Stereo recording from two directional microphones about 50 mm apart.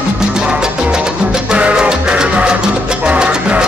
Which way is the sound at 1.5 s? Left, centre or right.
Right.